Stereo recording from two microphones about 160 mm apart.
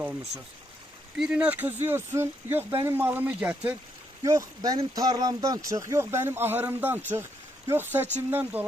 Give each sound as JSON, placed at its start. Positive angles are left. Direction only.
{"t": 0.0, "sound": "speech", "side_deg": -15}
{"t": 4.2, "sound": "speech", "side_deg": -20}